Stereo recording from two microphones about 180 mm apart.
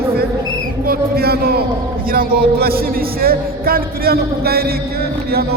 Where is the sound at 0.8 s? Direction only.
55° right (ahead or behind).